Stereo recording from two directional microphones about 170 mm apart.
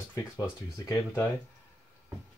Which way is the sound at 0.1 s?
20° left (ahead or behind).